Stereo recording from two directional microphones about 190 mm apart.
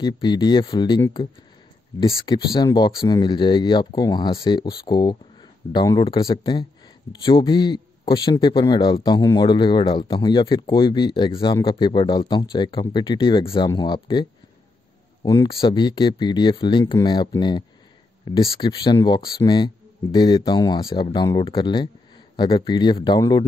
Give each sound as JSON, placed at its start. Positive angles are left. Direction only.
{"t": 0.0, "sound": "speech", "side_deg": 25}
{"t": 15.2, "sound": "speech", "side_deg": 20}